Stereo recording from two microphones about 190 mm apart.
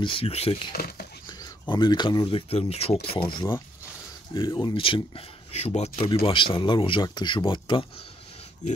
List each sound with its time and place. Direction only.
0.0 s speech: 30° left (ahead or behind)
0.7 s a sound: 55° left (ahead or behind)
1.2 s speech: 25° left (ahead or behind)